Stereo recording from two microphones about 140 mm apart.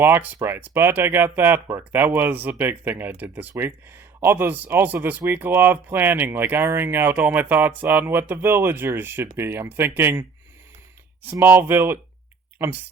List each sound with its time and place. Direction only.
0.0 s speech: 15° right (ahead or behind)